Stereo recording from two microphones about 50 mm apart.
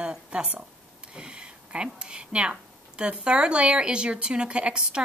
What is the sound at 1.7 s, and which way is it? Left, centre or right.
Speech, centre.